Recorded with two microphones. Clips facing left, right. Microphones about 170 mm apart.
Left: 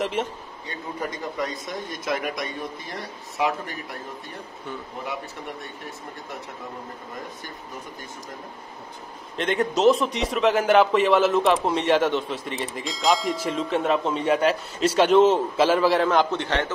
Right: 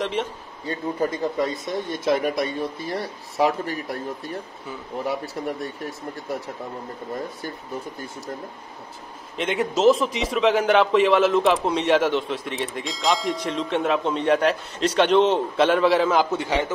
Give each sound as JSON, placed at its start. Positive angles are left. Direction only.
{"t": 0.0, "sound": "a man's voice", "side_deg": 0}
{"t": 1.4, "sound": "speech", "side_deg": -30}
{"t": 5.0, "sound": "speech", "side_deg": -35}
{"t": 9.4, "sound": "a man's voice", "side_deg": 0}